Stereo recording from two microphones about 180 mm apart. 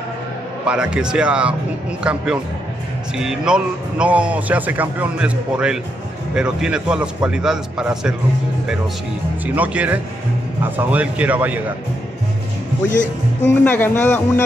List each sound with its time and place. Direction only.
0.7 s a man's voice: 5° right (ahead or behind)
9.6 s speech: 10° right (ahead or behind)
13.0 s speech: 80° left
13.7 s speech: 10° left (ahead or behind)